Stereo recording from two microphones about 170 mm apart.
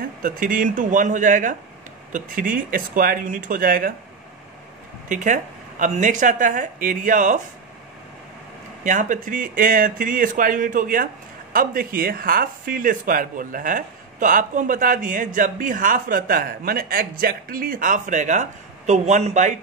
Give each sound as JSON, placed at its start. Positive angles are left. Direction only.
{"t": 0.2, "sound": "speech", "side_deg": -50}
{"t": 5.0, "sound": "speech", "side_deg": -45}
{"t": 8.8, "sound": "speech", "side_deg": -50}